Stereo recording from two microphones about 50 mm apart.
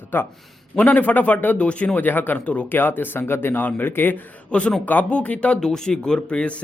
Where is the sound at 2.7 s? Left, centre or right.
Left.